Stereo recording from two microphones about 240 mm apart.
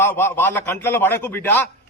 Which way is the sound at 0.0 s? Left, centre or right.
Centre.